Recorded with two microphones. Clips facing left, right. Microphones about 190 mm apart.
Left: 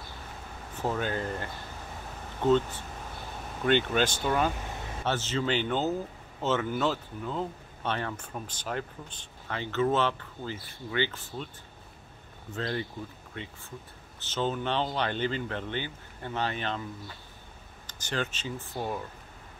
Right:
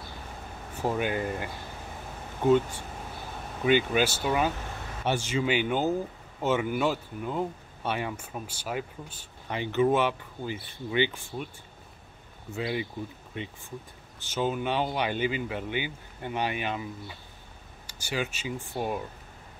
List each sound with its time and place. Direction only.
0.7 s speech: 15° right (ahead or behind)
12.4 s speech: 10° right (ahead or behind)
17.8 s speech: 10° right (ahead or behind)